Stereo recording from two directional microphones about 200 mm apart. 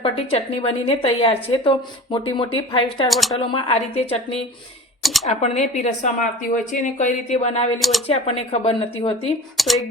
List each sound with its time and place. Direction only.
0.0 s a woman's voice: 30° left (ahead or behind)
3.1 s speech: centre (ahead or behind)
3.3 s a woman's voice: 25° left (ahead or behind)
5.0 s speech: centre (ahead or behind)
5.3 s speech: 35° left (ahead or behind)
7.8 s speech: centre (ahead or behind)
8.0 s a woman's voice: 30° left (ahead or behind)
9.6 s speech: centre (ahead or behind)